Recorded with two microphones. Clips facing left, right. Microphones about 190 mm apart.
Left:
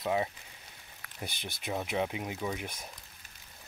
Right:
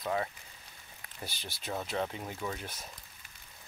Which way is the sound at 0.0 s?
15° left (ahead or behind).